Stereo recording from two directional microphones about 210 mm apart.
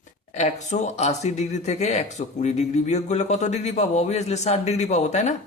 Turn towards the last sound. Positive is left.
turn(degrees=35)  # may be behind; listen again after turning